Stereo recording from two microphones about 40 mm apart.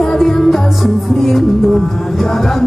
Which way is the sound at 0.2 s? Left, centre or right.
Centre.